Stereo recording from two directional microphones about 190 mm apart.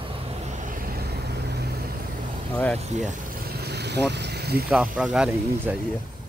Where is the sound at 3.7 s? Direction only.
60° right (ahead or behind).